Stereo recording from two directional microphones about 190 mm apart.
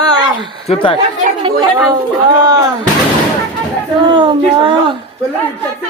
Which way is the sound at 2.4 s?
20° right (ahead or behind).